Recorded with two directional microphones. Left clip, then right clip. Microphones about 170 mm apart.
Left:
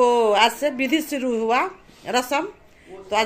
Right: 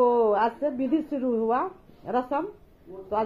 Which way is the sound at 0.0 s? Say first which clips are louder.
Left 5 dB; 20° left (ahead or behind).